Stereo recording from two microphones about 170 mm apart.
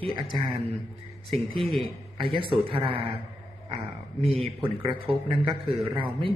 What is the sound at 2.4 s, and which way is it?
Speech, 30° right (ahead or behind).